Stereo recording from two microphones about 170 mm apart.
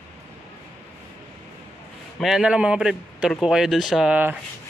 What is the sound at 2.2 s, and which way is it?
Speech, 5° right (ahead or behind).